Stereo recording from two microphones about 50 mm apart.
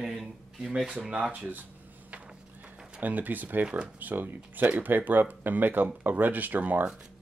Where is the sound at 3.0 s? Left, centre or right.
Right.